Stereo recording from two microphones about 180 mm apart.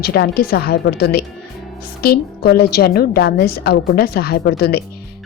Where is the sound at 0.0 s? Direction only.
60° left (ahead or behind).